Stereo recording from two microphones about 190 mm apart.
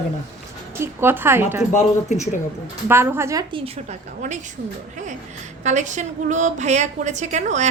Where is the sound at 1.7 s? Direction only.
35° left (ahead or behind).